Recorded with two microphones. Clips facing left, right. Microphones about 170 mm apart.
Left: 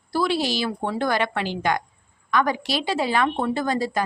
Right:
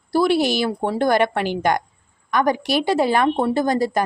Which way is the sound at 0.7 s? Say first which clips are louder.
Right 5 dB; 45° right (ahead or behind).